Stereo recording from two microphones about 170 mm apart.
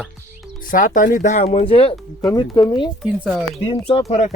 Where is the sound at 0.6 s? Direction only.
50° left (ahead or behind); by 1.9 s 35° left (ahead or behind).